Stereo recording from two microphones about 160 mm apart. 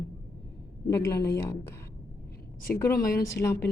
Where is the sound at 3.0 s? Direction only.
65° left (ahead or behind).